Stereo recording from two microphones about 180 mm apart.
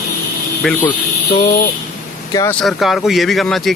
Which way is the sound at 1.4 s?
50° left (ahead or behind).